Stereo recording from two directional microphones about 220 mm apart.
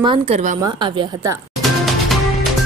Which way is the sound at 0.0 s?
25° right (ahead or behind).